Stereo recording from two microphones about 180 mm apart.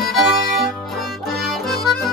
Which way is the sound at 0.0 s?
Centre (ahead or behind).